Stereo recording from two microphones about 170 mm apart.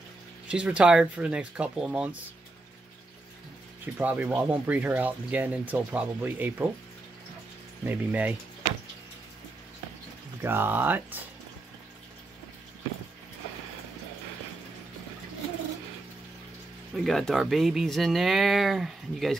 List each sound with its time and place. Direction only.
0.5 s speech: 5° right (ahead or behind)
3.8 s speech: 10° right (ahead or behind)
7.8 s speech: 10° right (ahead or behind)
10.4 s speech: 15° right (ahead or behind)
16.9 s speech: centre (ahead or behind)